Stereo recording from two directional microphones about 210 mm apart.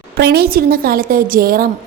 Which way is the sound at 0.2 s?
50° right (ahead or behind).